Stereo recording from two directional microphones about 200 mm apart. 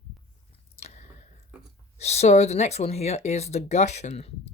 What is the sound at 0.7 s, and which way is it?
Squish, 30° left (ahead or behind).